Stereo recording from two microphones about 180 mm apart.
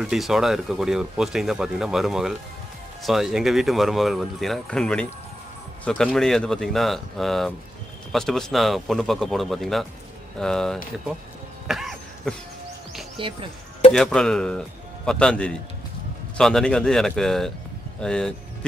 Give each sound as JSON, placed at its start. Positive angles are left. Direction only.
{"t": 0.0, "sound": "speech", "side_deg": 0}
{"t": 11.6, "sound": "throat clearing", "side_deg": 0}
{"t": 13.2, "sound": "speech", "side_deg": -30}
{"t": 13.9, "sound": "speech", "side_deg": 5}